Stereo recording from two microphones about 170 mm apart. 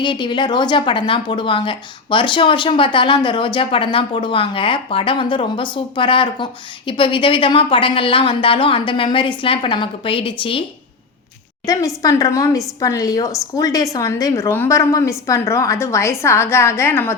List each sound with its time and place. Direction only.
0.0 s a woman's voice: 25° left (ahead or behind)
11.6 s speech: 20° left (ahead or behind)